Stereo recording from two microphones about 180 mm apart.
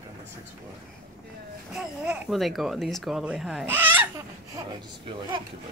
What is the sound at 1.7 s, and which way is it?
A child's voice, 5° right (ahead or behind).